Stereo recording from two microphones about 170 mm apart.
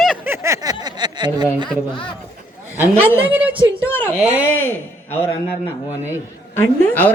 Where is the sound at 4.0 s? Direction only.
10° right (ahead or behind).